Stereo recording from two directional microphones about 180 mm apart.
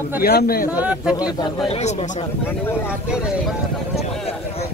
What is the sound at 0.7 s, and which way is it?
Speech, 5° right (ahead or behind).